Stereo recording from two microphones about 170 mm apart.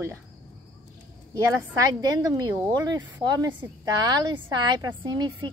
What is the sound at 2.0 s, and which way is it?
A woman's voice, 25° right (ahead or behind).